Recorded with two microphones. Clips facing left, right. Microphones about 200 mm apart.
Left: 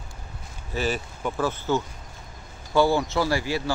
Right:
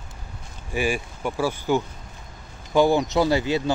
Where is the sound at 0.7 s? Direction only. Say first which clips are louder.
Right 2 dB; 10° right (ahead or behind).